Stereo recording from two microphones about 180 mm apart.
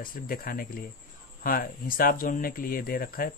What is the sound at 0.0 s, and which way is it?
Speech, 55° left (ahead or behind).